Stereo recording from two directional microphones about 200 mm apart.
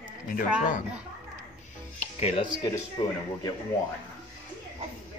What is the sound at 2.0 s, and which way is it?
Music, 30° left (ahead or behind).